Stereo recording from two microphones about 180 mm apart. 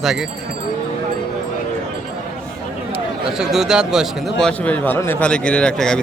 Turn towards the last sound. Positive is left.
turn(degrees=5)  # may be behind; listen again after turning